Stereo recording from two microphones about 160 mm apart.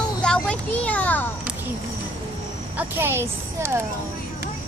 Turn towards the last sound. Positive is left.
turn(degrees=-15)  # may be behind; listen again after turning